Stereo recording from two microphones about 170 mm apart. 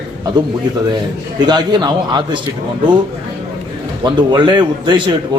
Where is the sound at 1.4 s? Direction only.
25° right (ahead or behind).